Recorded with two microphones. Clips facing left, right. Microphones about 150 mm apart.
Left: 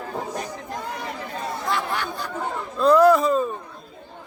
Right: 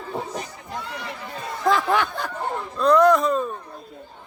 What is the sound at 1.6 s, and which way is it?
Chatter, 90° right.